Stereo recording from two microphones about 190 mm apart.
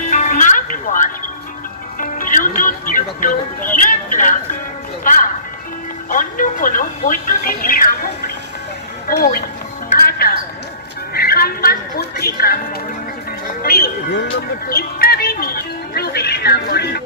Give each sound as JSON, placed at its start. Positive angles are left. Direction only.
{"t": 0.0, "sound": "music", "side_deg": 40}
{"t": 3.8, "sound": "a sound", "side_deg": 45}
{"t": 5.0, "sound": "speech", "side_deg": 45}
{"t": 9.0, "sound": "a woman's voice", "side_deg": 50}
{"t": 13.6, "sound": "speech", "side_deg": 55}